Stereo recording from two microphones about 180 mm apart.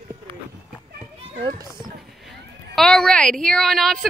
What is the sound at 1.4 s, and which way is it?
Speech, 25° right (ahead or behind).